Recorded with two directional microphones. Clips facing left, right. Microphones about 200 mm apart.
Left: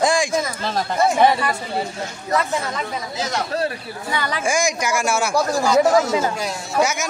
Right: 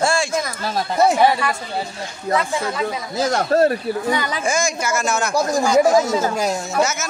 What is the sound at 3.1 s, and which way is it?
Speech, 50° right (ahead or behind).